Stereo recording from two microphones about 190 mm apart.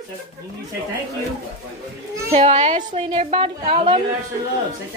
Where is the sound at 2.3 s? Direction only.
35° right (ahead or behind).